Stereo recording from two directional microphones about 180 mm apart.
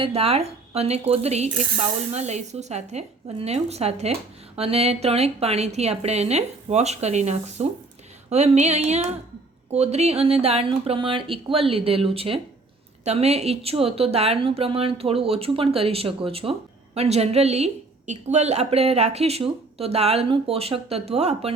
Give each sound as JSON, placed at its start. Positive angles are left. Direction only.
{"t": 0.0, "sound": "a woman's voice", "side_deg": -35}